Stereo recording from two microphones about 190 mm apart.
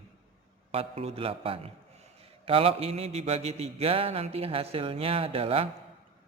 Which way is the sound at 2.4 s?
30° right (ahead or behind).